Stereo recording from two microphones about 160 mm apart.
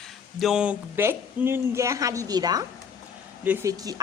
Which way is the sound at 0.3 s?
5° right (ahead or behind).